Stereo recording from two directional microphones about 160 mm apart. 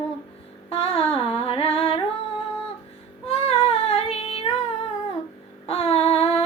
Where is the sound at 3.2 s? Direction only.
40° left (ahead or behind).